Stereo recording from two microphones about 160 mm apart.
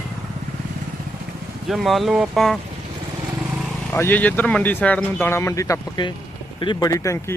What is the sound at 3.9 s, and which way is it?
A man's voice, 10° left (ahead or behind).